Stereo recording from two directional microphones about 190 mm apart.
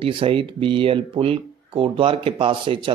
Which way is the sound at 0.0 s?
30° right (ahead or behind).